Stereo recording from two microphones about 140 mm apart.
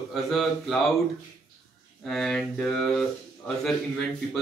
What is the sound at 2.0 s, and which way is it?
Speech, 5° left (ahead or behind).